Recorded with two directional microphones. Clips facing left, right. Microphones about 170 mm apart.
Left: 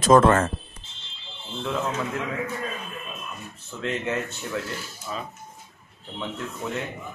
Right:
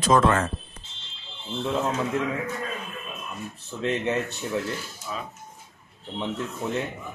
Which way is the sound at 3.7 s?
20° right (ahead or behind).